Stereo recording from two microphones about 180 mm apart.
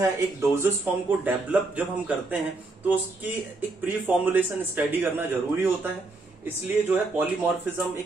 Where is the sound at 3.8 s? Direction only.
10° right (ahead or behind).